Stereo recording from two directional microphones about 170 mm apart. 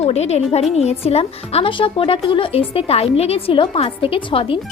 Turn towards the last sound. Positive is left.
turn(degrees=30)  # may be behind; listen again after turning